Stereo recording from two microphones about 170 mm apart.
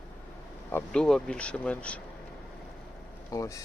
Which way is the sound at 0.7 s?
10° left (ahead or behind).